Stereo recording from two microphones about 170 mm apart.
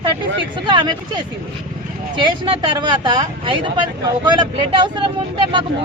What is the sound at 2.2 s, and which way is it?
Speech, 30° right (ahead or behind).